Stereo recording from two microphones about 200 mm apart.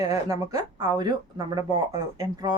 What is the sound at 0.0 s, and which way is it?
Speech, 15° right (ahead or behind).